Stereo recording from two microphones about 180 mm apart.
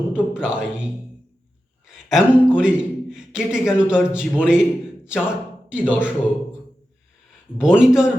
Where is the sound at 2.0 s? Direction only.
5° right (ahead or behind).